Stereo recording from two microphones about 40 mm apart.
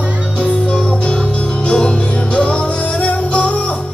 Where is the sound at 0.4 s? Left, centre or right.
Left.